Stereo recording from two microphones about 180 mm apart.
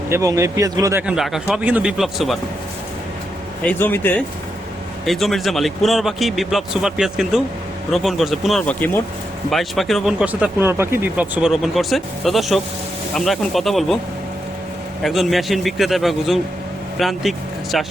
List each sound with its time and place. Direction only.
0.1 s speech: 15° right (ahead or behind)
1.0 s speech: centre (ahead or behind)
3.6 s speech: 10° left (ahead or behind)
15.0 s speech: centre (ahead or behind)